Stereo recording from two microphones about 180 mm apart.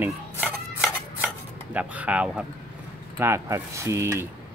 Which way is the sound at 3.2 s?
15° right (ahead or behind).